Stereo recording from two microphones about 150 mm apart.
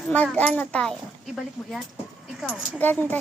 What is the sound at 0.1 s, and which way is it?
Speech, 10° left (ahead or behind).